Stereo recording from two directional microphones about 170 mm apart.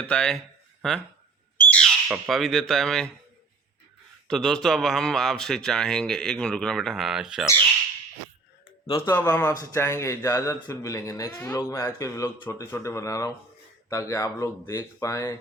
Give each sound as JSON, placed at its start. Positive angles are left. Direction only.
{"t": 0.0, "sound": "speech", "side_deg": 5}
{"t": 1.5, "sound": "bird", "side_deg": 5}
{"t": 2.1, "sound": "speech", "side_deg": -5}
{"t": 4.3, "sound": "speech", "side_deg": 5}
{"t": 8.9, "sound": "speech", "side_deg": 35}
{"t": 9.1, "sound": "speech", "side_deg": 15}